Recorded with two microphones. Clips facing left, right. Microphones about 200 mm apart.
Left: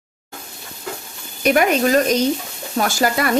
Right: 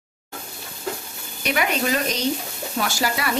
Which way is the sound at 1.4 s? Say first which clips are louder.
Left 7 dB; 45° left (ahead or behind).